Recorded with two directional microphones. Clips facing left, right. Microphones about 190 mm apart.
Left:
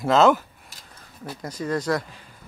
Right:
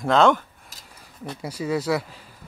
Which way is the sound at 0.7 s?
40° right (ahead or behind).